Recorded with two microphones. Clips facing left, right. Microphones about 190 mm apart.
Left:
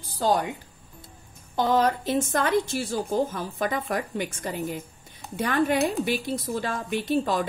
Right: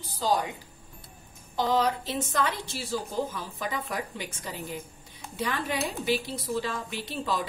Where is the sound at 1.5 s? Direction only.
50° left (ahead or behind).